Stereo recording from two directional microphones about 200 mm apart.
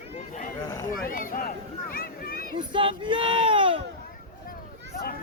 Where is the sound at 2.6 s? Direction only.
25° right (ahead or behind).